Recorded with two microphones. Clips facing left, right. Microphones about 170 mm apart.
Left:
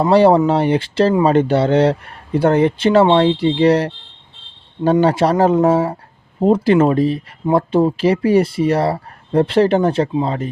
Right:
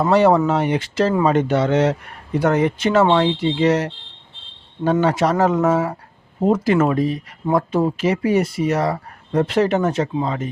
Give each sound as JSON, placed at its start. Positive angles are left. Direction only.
{"t": 0.0, "sound": "speech", "side_deg": 30}